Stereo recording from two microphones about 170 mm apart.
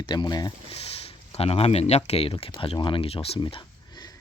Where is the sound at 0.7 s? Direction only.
35° left (ahead or behind).